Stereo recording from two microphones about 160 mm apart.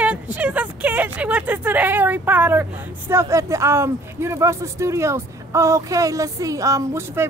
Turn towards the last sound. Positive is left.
turn(degrees=-15)  # may be behind; listen again after turning